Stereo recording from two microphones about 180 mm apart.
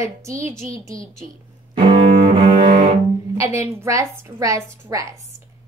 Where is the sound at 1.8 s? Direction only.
25° right (ahead or behind).